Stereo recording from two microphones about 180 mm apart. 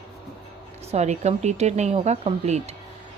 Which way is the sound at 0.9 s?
40° right (ahead or behind).